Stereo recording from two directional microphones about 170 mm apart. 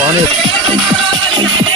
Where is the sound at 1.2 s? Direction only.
25° right (ahead or behind).